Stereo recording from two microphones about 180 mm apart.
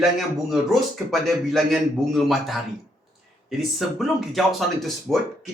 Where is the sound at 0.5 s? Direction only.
Centre (ahead or behind).